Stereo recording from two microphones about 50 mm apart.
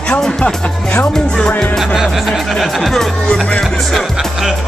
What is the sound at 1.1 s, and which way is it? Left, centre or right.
Speech, centre.